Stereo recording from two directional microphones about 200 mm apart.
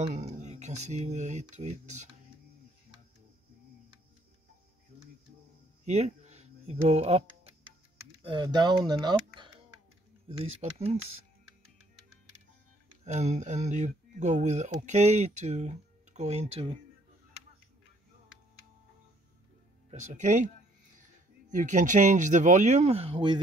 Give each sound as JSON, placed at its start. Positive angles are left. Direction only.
{"t": 0.0, "sound": "speech", "side_deg": -35}
{"t": 5.9, "sound": "a sound", "side_deg": -35}
{"t": 8.2, "sound": "speech", "side_deg": -25}
{"t": 10.6, "sound": "speech", "side_deg": -30}
{"t": 13.0, "sound": "speech", "side_deg": -35}
{"t": 19.9, "sound": "speech", "side_deg": -40}